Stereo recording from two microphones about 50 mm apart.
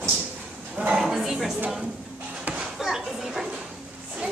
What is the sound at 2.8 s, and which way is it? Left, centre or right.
Speech, centre.